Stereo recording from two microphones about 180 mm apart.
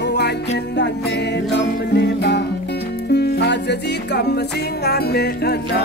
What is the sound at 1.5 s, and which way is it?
Music, 65° left (ahead or behind).